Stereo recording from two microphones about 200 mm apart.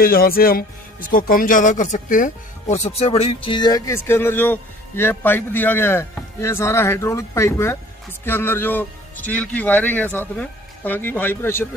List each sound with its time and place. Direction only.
0.0 s speech: 45° left (ahead or behind); by 11.6 s 10° left (ahead or behind)